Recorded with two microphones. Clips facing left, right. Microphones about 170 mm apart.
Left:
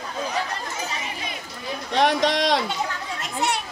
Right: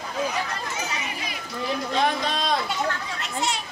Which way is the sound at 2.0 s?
75° left (ahead or behind).